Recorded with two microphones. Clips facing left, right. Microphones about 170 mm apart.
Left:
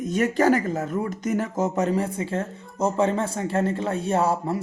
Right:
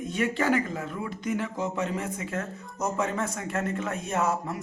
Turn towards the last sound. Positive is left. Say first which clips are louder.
# left 5 dB
turn(degrees=30)  # may be behind; listen again after turning